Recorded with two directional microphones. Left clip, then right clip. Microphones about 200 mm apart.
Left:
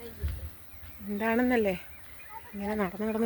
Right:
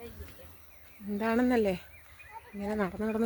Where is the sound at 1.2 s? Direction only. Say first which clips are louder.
Left 1 dB; 10° right (ahead or behind).